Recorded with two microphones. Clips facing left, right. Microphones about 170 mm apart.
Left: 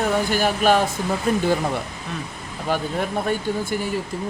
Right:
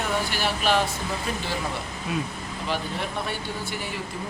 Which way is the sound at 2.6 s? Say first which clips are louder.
Left 6 dB; 50° left (ahead or behind).